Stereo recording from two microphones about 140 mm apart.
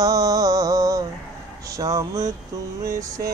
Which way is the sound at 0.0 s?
25° right (ahead or behind).